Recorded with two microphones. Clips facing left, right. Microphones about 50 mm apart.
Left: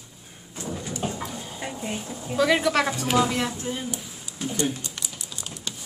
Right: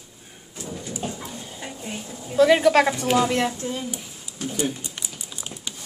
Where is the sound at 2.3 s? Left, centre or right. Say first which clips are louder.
Right 5 dB; centre.